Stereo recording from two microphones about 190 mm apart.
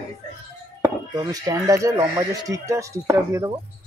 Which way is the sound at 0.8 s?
20° right (ahead or behind).